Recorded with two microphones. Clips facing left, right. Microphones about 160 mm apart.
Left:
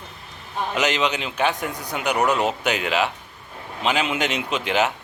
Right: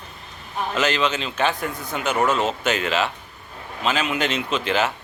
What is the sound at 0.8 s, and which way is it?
A man's voice, 15° left (ahead or behind).